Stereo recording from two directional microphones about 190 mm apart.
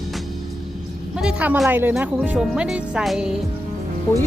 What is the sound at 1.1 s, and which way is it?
A woman's voice, 5° right (ahead or behind).